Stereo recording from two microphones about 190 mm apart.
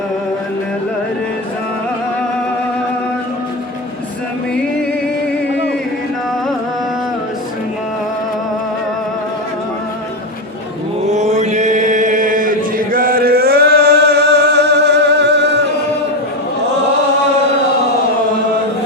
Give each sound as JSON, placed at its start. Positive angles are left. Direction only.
{"t": 11.0, "sound": "chant", "side_deg": -35}